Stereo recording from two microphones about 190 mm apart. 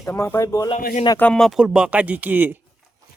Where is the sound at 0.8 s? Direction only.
45° left (ahead or behind).